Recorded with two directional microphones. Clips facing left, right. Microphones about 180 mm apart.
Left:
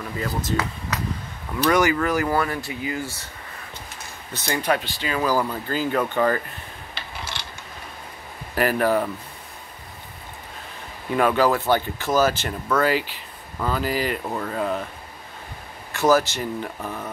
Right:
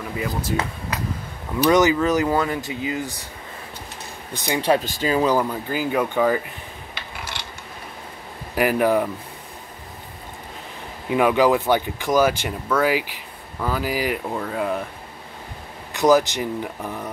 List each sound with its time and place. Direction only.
0.2 s speech: 10° right (ahead or behind)
1.7 s speech: 20° right (ahead or behind)
4.3 s speech: 15° right (ahead or behind)
4.6 s speech: 30° right (ahead or behind)
4.8 s speech: 45° right (ahead or behind)
5.1 s speech: 20° right (ahead or behind)
5.4 s speech: 10° right (ahead or behind)
8.5 s speech: 15° right (ahead or behind)
11.1 s speech: 10° right (ahead or behind)
15.9 s speech: 15° right (ahead or behind)